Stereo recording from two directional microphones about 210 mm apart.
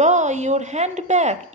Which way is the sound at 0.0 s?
35° right (ahead or behind).